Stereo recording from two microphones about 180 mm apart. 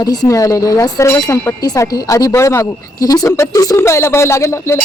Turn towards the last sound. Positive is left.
turn(degrees=15)  # may be behind; listen again after turning